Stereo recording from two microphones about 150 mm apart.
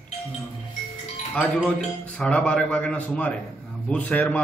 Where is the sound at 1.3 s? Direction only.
10° left (ahead or behind).